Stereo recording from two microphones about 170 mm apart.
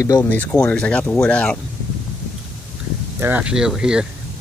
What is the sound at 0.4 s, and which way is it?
Speech, 10° left (ahead or behind).